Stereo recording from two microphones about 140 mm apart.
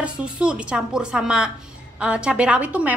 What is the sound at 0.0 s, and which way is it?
A woman's voice, 5° right (ahead or behind).